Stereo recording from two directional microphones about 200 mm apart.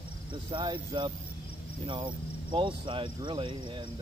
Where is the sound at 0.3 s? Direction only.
25° right (ahead or behind).